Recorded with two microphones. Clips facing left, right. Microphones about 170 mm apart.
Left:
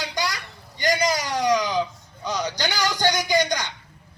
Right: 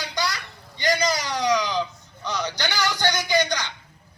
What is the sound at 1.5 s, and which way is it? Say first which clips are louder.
Baby cry: left 1 dB; 45° left (ahead or behind).